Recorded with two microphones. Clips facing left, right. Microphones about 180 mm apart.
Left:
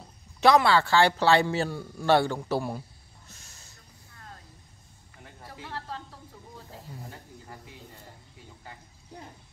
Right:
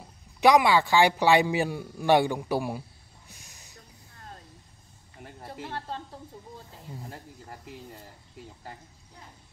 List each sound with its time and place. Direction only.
0.4 s a man's voice: 15° right (ahead or behind)
3.3 s a sound: 15° right (ahead or behind)
5.4 s speech: 25° right (ahead or behind)